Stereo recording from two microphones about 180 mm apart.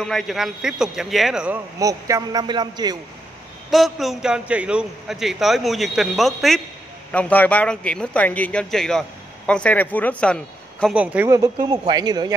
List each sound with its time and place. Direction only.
0.0 s a man's voice: centre (ahead or behind)
1.8 s a man's voice: 20° right (ahead or behind)
3.7 s a man's voice: centre (ahead or behind)
11.0 s a man's voice: 10° right (ahead or behind)